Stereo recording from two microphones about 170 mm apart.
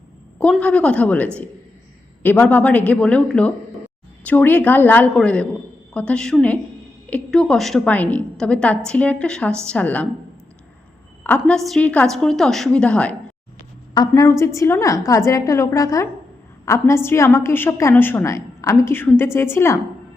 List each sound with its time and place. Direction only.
0.3 s a woman's voice: 5° left (ahead or behind)
11.2 s a woman's voice: 10° left (ahead or behind)
14.1 s a woman's voice: 15° left (ahead or behind)